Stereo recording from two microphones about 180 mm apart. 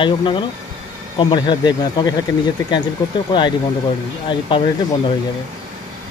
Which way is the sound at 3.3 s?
25° left (ahead or behind).